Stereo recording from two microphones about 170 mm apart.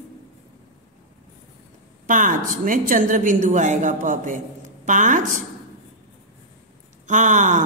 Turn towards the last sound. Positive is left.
turn(degrees=-45)  # may be behind; listen again after turning